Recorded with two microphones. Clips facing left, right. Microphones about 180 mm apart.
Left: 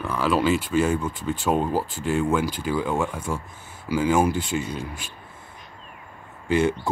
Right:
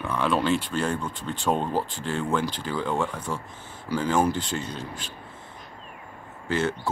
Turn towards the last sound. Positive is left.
turn(degrees=15)  # may be behind; listen again after turning